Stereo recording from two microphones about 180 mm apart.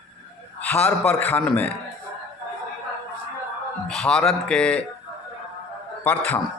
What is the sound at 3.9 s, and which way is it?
Speech, 5° left (ahead or behind).